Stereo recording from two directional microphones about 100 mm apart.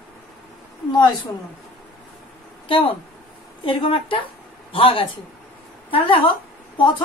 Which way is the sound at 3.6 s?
60° left (ahead or behind).